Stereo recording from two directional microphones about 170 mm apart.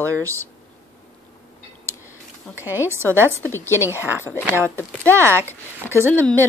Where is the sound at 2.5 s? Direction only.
10° right (ahead or behind).